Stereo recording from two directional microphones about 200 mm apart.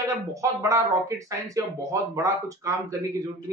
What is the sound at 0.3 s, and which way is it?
Speech, 15° right (ahead or behind).